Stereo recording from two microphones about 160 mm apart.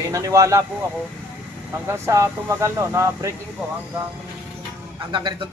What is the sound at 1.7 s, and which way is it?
Speech, 15° right (ahead or behind).